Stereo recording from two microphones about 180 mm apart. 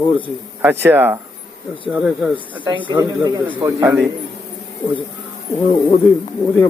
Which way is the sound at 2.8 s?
25° right (ahead or behind).